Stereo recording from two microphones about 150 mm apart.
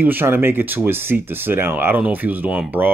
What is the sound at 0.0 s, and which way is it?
Speech, 15° right (ahead or behind).